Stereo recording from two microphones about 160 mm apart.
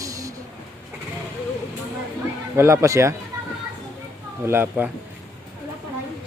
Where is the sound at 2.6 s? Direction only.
15° right (ahead or behind).